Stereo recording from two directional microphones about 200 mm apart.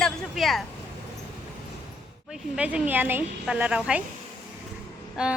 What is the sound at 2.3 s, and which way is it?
A woman's voice, 5° right (ahead or behind).